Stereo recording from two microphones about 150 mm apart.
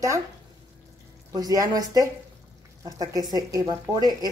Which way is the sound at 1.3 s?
25° right (ahead or behind).